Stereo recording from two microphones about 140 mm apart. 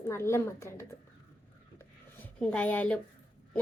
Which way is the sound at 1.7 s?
10° left (ahead or behind).